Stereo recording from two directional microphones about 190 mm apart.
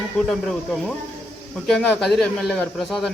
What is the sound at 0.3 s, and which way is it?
Speech, centre (ahead or behind).